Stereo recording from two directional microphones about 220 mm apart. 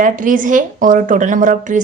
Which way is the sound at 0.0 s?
35° right (ahead or behind).